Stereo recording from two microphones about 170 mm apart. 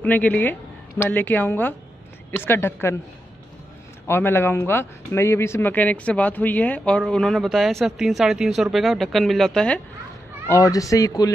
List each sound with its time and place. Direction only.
0.0 s a woman's voice: 10° left (ahead or behind)
4.1 s speech: 15° left (ahead or behind)
10.5 s speech: 20° left (ahead or behind)